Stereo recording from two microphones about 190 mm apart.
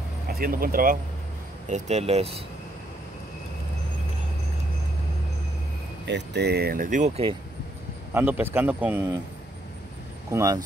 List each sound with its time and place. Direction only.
0.3 s speech: 50° right (ahead or behind)
1.7 s speech: 35° right (ahead or behind)
6.0 s speech: 65° right (ahead or behind); by 7.2 s 40° right (ahead or behind)
8.1 s a man's voice: 10° right (ahead or behind)
10.3 s a man's voice: 15° right (ahead or behind)